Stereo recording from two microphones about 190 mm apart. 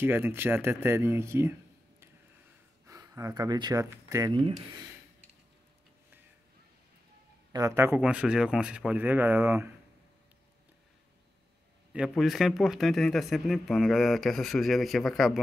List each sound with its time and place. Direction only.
0.0 s speech: 10° right (ahead or behind)
7.5 s speech: 15° right (ahead or behind)
12.1 s speech: centre (ahead or behind)